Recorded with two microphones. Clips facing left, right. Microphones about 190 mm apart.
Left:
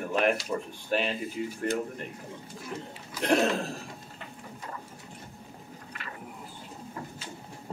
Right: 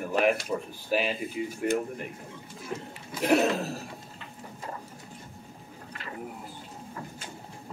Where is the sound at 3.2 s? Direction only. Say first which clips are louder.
Right 1 dB; 5° right (ahead or behind).